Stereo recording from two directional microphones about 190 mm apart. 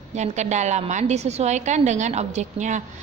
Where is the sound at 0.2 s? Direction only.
40° right (ahead or behind).